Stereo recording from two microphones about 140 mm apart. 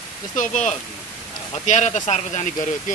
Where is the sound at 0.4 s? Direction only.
65° left (ahead or behind).